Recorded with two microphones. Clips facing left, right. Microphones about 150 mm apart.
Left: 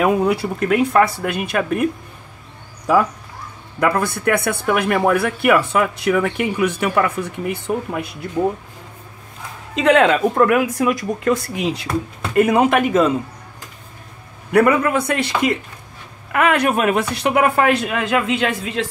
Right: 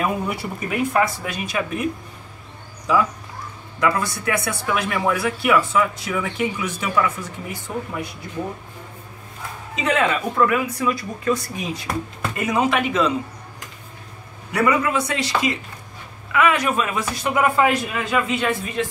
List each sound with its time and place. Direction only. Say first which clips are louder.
0.0 s speech: left 7 dB; 75° left (ahead or behind); by 1.9 s 55° left (ahead or behind)
3.8 s speech: left 4 dB; 55° left (ahead or behind)
9.8 s speech: left 7 dB; 70° left (ahead or behind)
12.4 s speech: left 7 dB; 55° left (ahead or behind)
14.5 s speech: left 5 dB; 55° left (ahead or behind); by 18.9 s 90° left